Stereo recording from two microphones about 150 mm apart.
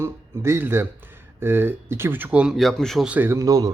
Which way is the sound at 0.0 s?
20° right (ahead or behind).